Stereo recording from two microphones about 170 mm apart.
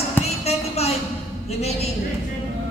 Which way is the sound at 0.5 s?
40° left (ahead or behind).